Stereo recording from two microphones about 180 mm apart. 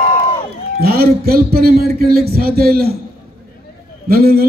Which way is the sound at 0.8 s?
60° right (ahead or behind).